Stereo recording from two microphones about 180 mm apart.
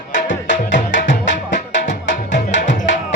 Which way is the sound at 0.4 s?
90° left.